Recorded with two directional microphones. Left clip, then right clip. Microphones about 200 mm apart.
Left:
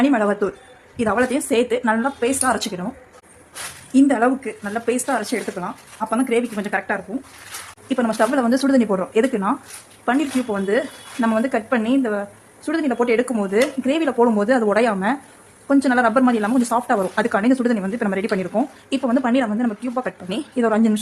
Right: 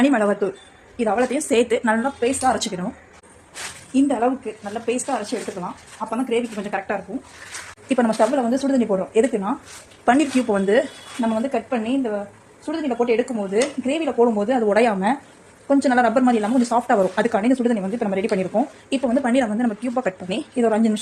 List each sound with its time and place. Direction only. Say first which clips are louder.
0.0 s a woman's voice: even; centre (ahead or behind)
1.5 s speech: even; centre (ahead or behind)
2.4 s a woman's voice: right 2 dB; 15° left (ahead or behind)
3.9 s speech: left 3 dB; 25° left (ahead or behind)
7.9 s speech: right 1 dB; 5° right (ahead or behind)
8.4 s speech: left 3 dB; 25° left (ahead or behind)
9.1 s a woman's voice: left 1 dB; 5° left (ahead or behind)
10.1 s speech: right 3 dB; 15° right (ahead or behind)
11.2 s speech: left 2 dB; 20° left (ahead or behind)
14.7 s speech: even; centre (ahead or behind)